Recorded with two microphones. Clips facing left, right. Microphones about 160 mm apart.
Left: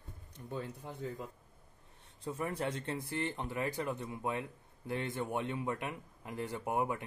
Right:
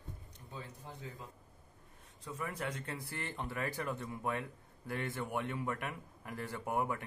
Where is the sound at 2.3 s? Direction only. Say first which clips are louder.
Left 4 dB; 30° left (ahead or behind).